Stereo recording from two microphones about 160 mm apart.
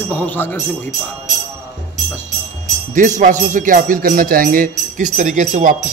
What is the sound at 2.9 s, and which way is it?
Speech, 50° right (ahead or behind).